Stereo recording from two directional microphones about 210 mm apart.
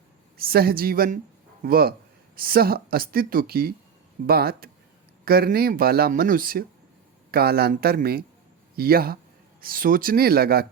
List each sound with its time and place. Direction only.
0.3 s speech: 45° right (ahead or behind)